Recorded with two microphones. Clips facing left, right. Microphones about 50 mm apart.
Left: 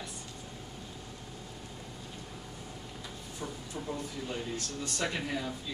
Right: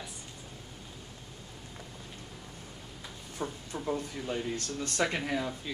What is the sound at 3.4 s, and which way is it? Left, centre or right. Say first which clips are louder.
Speech: right 4 dB; right.